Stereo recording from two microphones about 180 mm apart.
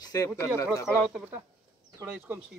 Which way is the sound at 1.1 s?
5° right (ahead or behind).